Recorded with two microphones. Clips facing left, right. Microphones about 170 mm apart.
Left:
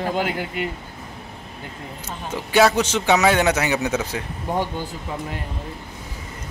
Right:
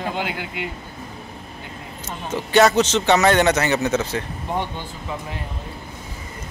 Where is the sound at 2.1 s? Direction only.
10° left (ahead or behind).